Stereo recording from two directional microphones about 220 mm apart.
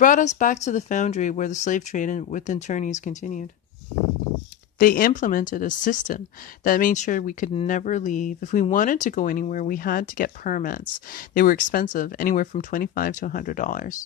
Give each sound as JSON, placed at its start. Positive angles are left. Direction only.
{"t": 0.0, "sound": "speech", "side_deg": 35}
{"t": 4.7, "sound": "speech", "side_deg": 40}